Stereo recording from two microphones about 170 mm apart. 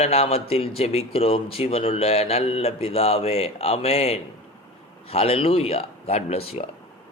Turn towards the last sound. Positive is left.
turn(degrees=35)  # may be behind; listen again after turning